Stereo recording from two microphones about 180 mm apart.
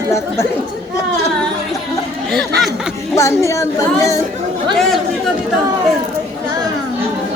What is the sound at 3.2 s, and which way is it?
Speech, 15° left (ahead or behind).